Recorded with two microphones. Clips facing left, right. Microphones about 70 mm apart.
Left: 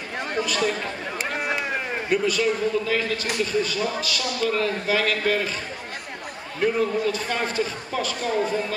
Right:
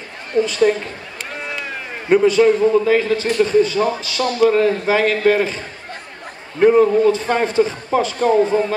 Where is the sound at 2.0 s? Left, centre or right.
Right.